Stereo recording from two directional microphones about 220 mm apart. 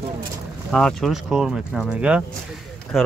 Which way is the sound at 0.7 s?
Centre (ahead or behind).